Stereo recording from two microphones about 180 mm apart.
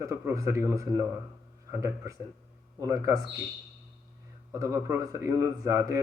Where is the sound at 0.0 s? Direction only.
15° right (ahead or behind).